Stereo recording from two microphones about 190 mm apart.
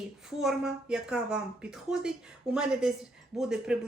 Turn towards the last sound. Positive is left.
turn(degrees=-5)  # may be behind; listen again after turning